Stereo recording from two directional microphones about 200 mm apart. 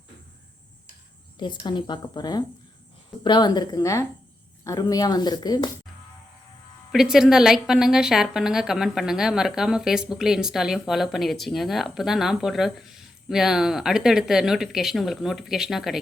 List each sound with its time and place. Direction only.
1.4 s speech: 20° left (ahead or behind)
6.9 s a woman's voice: centre (ahead or behind)